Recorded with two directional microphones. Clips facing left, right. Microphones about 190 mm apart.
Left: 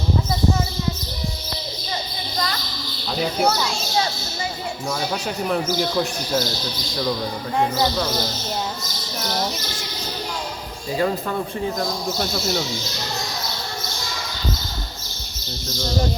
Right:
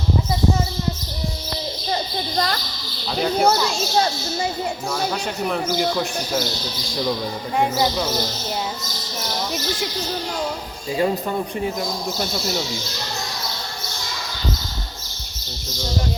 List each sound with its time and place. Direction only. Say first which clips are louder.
3.2 s speech: right 3 dB; centre (ahead or behind)
5.5 s speech: even; centre (ahead or behind)
7.6 s speech: right 1 dB; 10° right (ahead or behind)
10.9 s speech: right 1 dB; 20° right (ahead or behind)